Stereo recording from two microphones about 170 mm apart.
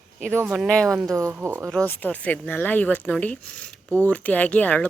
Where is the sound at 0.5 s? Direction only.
Centre (ahead or behind).